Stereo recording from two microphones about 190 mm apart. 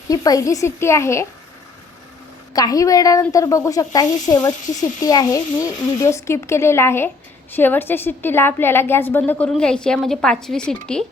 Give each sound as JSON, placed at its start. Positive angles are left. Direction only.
{"t": 0.1, "sound": "speech", "side_deg": 20}
{"t": 2.5, "sound": "speech", "side_deg": 20}